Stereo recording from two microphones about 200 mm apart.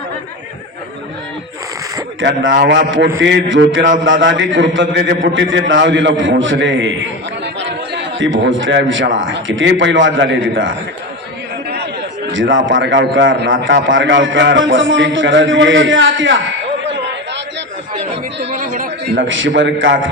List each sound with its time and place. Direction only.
2.2 s a man's voice: 65° right (ahead or behind)
7.9 s a man's voice: 70° right (ahead or behind)
12.3 s a man's voice: 70° right (ahead or behind)
16.8 s a sound: 60° right (ahead or behind)
18.5 s chatter: 40° right (ahead or behind)
19.1 s a man's voice: 70° right (ahead or behind)